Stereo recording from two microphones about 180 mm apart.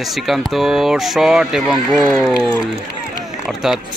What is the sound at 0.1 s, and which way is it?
Speech, centre (ahead or behind).